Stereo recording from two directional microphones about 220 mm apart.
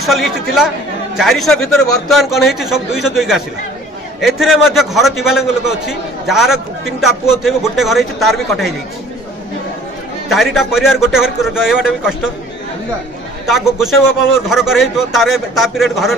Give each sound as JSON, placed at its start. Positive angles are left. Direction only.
{"t": 0.0, "sound": "a man's voice", "side_deg": 0}
{"t": 10.3, "sound": "a man's voice", "side_deg": 0}
{"t": 13.5, "sound": "a man's voice", "side_deg": 0}